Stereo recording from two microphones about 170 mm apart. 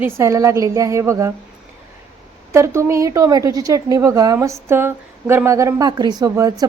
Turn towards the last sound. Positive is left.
turn(degrees=-20)  # may be behind; listen again after turning